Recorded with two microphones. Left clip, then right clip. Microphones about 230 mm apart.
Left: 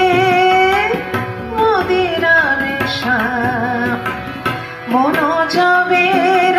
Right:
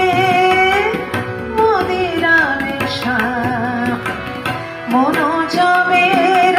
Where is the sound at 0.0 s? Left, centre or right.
Left.